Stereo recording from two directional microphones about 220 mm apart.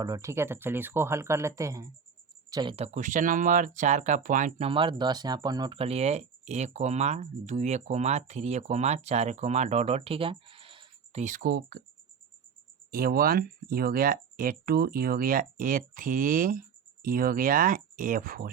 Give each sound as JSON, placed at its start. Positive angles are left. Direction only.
{"t": 0.0, "sound": "speech", "side_deg": -15}
{"t": 12.9, "sound": "speech", "side_deg": -40}